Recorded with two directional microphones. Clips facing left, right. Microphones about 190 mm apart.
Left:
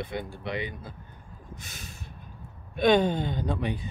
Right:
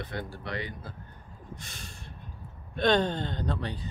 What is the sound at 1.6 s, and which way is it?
Snort, 5° left (ahead or behind).